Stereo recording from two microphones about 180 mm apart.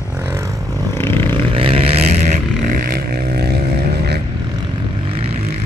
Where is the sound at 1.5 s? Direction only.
30° right (ahead or behind); by 4.2 s 65° right (ahead or behind).